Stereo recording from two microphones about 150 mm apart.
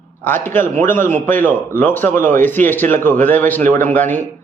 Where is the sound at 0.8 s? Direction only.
15° left (ahead or behind).